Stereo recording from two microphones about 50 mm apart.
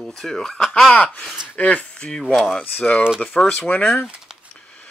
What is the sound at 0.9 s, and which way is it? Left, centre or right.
Speech, left.